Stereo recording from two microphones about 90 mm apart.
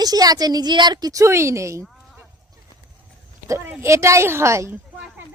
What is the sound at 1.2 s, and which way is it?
Speech, 30° right (ahead or behind).